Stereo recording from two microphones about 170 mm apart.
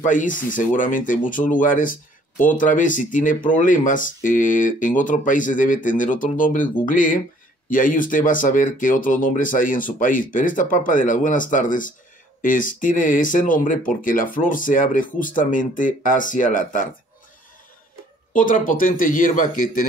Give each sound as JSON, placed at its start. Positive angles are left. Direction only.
{"t": 0.0, "sound": "speech", "side_deg": 50}
{"t": 18.3, "sound": "speech", "side_deg": 50}